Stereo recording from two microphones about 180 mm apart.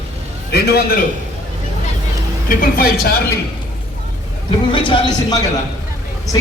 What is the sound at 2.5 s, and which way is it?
Speech, 50° left (ahead or behind).